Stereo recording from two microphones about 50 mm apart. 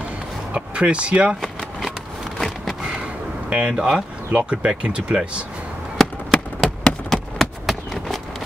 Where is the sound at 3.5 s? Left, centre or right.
Centre.